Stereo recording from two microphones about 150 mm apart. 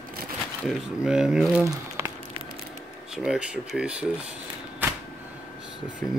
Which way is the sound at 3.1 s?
5° right (ahead or behind).